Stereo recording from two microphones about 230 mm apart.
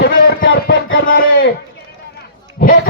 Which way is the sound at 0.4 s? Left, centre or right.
Left.